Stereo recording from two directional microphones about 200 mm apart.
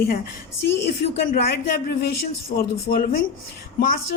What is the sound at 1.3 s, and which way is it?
Speech, 50° left (ahead or behind).